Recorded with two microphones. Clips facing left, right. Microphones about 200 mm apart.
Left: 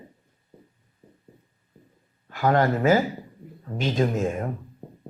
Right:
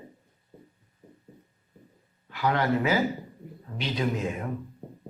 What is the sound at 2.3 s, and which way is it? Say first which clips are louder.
A man's voice: left 4 dB; 45° left (ahead or behind).